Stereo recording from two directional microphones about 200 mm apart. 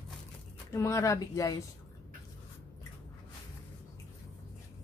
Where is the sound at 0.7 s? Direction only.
15° left (ahead or behind).